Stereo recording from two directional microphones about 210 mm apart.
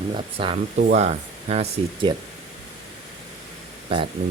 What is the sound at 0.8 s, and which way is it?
Speech, 35° right (ahead or behind).